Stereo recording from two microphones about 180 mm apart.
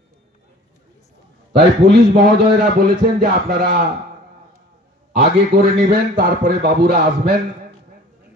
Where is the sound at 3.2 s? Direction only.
55° right (ahead or behind).